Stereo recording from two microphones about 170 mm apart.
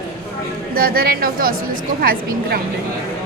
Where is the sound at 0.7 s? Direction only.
60° right (ahead or behind).